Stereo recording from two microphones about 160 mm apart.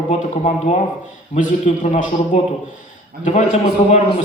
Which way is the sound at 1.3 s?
45° left (ahead or behind).